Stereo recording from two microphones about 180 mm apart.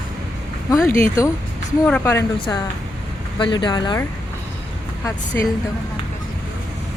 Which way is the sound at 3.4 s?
25° left (ahead or behind).